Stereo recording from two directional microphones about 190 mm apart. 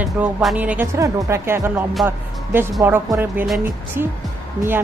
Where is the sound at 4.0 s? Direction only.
50° right (ahead or behind).